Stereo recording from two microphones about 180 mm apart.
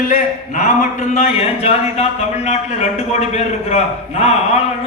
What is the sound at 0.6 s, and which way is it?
A man's voice, 40° left (ahead or behind).